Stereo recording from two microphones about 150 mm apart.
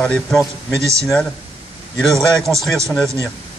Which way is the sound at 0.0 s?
5° left (ahead or behind).